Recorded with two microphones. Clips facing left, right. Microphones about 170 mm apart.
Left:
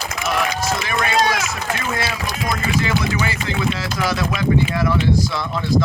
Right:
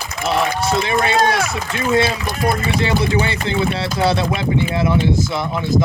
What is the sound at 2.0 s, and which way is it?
Speech, 55° right (ahead or behind).